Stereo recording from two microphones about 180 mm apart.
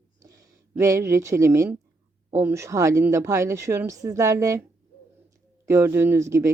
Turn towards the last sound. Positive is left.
turn(degrees=-15)  # may be behind; listen again after turning